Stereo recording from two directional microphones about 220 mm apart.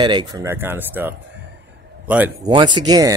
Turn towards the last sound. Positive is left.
turn(degrees=-15)  # may be behind; listen again after turning